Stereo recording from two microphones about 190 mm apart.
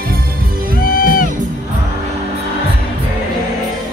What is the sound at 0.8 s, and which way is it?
Music, 50° left (ahead or behind).